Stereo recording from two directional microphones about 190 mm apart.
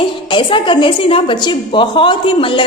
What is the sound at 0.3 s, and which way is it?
A woman's voice, 25° left (ahead or behind).